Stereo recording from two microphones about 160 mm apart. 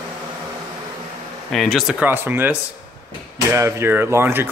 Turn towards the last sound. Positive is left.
turn(degrees=-15)  # may be behind; listen again after turning